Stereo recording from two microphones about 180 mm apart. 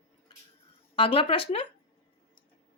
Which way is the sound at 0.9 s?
30° left (ahead or behind).